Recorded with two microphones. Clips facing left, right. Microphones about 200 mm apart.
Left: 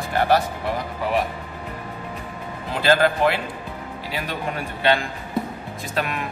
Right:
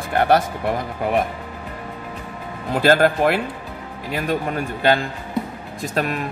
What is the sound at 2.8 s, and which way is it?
Speech, 50° right (ahead or behind).